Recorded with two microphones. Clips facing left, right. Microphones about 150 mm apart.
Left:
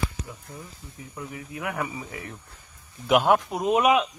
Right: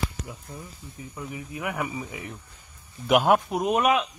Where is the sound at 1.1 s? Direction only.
5° right (ahead or behind).